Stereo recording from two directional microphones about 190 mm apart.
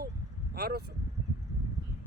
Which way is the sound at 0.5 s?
55° right (ahead or behind).